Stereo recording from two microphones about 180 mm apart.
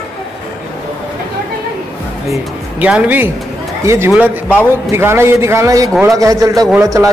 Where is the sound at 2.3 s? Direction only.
5° right (ahead or behind).